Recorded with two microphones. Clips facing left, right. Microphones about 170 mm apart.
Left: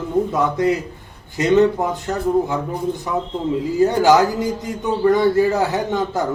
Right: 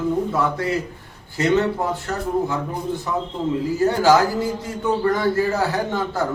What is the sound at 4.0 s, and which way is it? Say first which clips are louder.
A man's voice: even; 20° left (ahead or behind).